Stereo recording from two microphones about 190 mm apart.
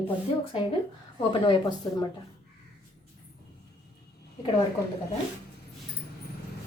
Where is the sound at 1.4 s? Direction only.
25° left (ahead or behind).